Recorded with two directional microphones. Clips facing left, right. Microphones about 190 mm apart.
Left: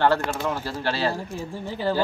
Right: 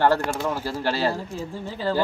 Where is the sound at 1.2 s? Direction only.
15° left (ahead or behind).